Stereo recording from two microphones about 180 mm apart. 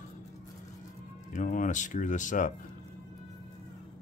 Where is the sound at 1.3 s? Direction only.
45° left (ahead or behind).